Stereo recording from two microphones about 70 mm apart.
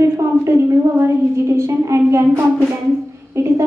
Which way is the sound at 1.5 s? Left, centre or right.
Right.